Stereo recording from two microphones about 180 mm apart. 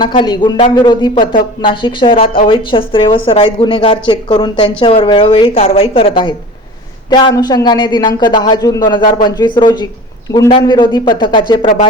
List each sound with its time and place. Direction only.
0.0 s a woman's voice: 25° left (ahead or behind)